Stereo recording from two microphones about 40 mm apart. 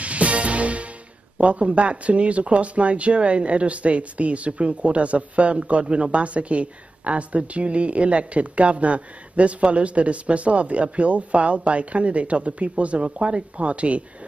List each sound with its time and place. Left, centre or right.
0.0 s music: right
1.4 s speech: right